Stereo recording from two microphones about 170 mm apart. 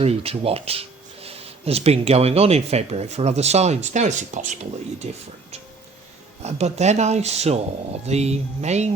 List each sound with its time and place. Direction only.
0.0 s speech: 35° right (ahead or behind)
6.4 s speech: 40° right (ahead or behind)